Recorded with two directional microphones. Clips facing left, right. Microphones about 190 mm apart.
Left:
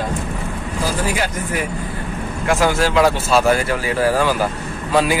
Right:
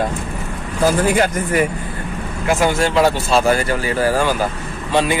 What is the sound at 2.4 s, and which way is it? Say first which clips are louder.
A man's voice: even; centre (ahead or behind).